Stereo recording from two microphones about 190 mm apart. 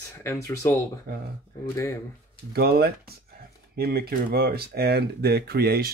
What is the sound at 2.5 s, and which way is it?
Speech, 55° right (ahead or behind).